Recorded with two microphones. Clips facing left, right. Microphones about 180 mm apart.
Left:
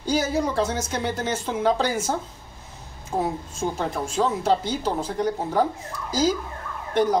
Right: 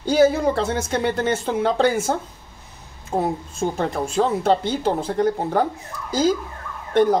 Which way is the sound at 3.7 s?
60° right (ahead or behind).